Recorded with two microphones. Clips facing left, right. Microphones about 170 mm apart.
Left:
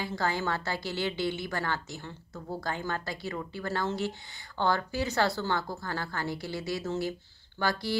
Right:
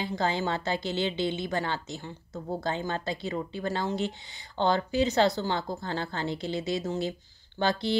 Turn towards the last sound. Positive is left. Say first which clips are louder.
# right 3 dB
turn(degrees=-20)  # may be behind; listen again after turning